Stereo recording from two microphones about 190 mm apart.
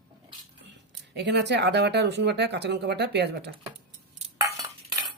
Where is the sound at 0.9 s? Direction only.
65° right (ahead or behind).